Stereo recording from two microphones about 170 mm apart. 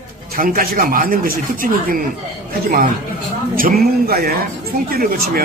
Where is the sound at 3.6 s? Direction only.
60° right (ahead or behind).